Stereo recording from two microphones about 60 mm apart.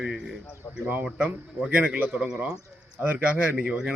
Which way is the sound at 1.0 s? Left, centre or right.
Right.